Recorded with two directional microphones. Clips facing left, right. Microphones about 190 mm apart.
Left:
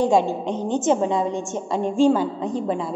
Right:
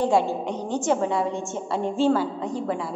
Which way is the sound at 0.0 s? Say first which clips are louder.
Left 3 dB; 20° left (ahead or behind).